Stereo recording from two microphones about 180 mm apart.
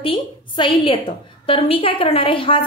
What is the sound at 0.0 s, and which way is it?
A woman's voice, 30° left (ahead or behind).